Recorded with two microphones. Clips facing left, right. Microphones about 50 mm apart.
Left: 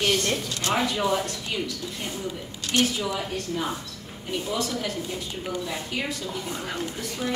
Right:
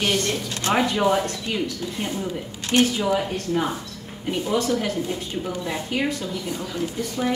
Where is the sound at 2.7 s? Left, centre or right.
Right.